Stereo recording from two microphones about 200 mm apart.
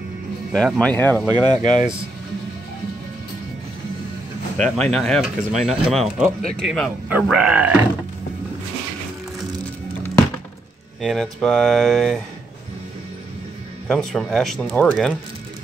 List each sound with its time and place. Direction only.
0.5 s speech: 5° left (ahead or behind)
1.2 s speech: 20° right (ahead or behind)
1.7 s speech: centre (ahead or behind)
4.6 s speech: 5° left (ahead or behind)
11.0 s speech: centre (ahead or behind)
13.8 s speech: centre (ahead or behind)